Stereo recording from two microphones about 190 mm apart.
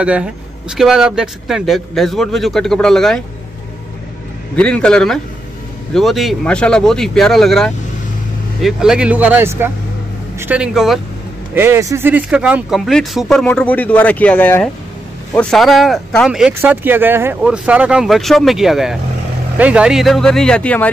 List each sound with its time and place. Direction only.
0.0 s speech: 5° right (ahead or behind)
4.6 s speech: 5° left (ahead or behind)
11.5 s speech: 15° right (ahead or behind); by 20.9 s 5° left (ahead or behind)